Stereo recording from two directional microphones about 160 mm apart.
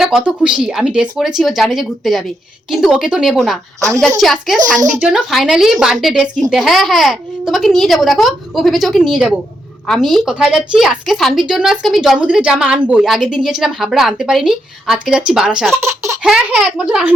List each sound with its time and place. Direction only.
0.0 s a woman's voice: 5° right (ahead or behind)
3.8 s a woman's voice: 20° right (ahead or behind)
4.2 s a woman's voice: centre (ahead or behind)
15.8 s speech: 15° right (ahead or behind)
16.2 s a woman's voice: 5° right (ahead or behind)